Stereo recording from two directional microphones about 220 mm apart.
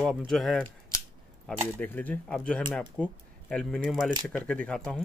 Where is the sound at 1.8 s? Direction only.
5° left (ahead or behind).